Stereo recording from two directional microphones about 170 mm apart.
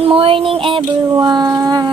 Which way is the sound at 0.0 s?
35° right (ahead or behind).